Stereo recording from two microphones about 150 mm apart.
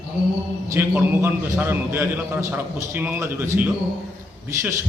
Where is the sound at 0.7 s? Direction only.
15° right (ahead or behind).